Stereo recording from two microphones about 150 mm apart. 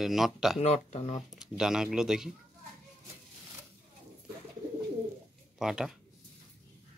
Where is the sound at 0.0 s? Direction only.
Centre (ahead or behind).